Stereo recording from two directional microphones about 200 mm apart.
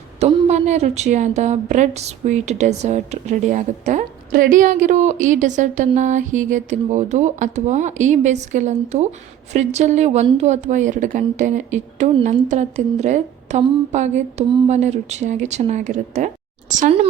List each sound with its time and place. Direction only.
0.2 s a woman's voice: 35° right (ahead or behind)